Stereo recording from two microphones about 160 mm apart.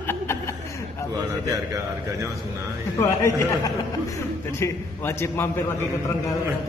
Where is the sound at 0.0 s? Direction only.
15° left (ahead or behind).